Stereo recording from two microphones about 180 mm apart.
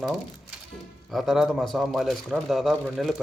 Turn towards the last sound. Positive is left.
turn(degrees=0)  # may be behind; listen again after turning